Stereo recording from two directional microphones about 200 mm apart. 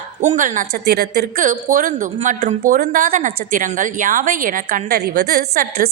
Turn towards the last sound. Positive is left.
turn(degrees=-50)  # may be behind; listen again after turning